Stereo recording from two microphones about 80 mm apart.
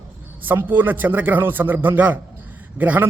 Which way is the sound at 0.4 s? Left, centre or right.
Right.